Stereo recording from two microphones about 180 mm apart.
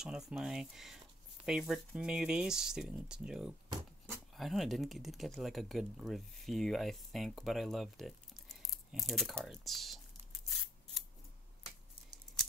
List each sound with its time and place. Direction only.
0.0 s speech: 5° right (ahead or behind)
3.6 s a sound: 20° right (ahead or behind)
4.4 s speech: centre (ahead or behind)